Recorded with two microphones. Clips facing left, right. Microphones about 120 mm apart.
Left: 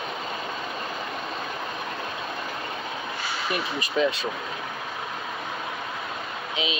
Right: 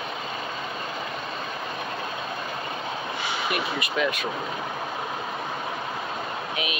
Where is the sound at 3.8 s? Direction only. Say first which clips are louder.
Left 2 dB; 30° left (ahead or behind).